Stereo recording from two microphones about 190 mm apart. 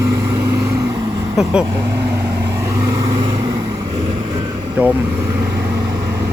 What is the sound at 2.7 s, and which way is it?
Vehicle, 20° right (ahead or behind).